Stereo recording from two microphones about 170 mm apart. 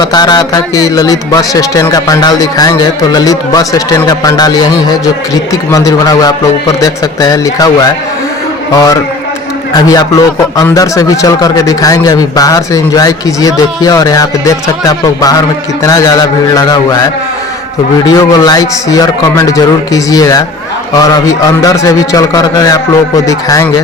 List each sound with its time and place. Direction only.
0.0 s speech: 25° left (ahead or behind)
9.7 s speech: 20° left (ahead or behind)
18.0 s speech: 20° left (ahead or behind)